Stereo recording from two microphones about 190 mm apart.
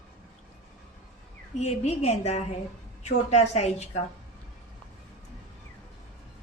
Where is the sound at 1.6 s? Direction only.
35° left (ahead or behind).